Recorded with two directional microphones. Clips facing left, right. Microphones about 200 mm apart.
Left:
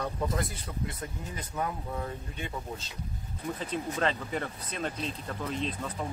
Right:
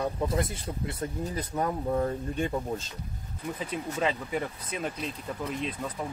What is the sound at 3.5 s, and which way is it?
Speech, 10° right (ahead or behind).